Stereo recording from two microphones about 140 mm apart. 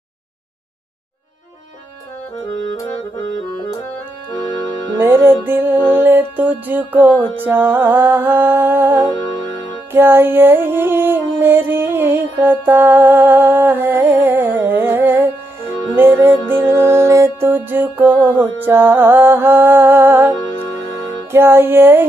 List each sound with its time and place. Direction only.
2.4 s music: 25° left (ahead or behind)
4.9 s music: 15° right (ahead or behind)